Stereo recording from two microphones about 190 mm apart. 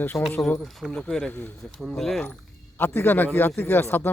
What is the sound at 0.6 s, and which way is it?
Speech, centre (ahead or behind).